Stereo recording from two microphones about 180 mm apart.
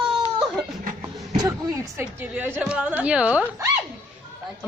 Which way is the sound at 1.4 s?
20° right (ahead or behind).